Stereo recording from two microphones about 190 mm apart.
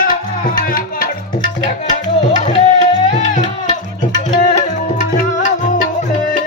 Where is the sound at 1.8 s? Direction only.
40° left (ahead or behind).